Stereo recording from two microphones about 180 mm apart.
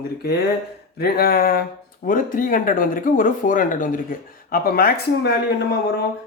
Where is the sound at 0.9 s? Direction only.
60° left (ahead or behind).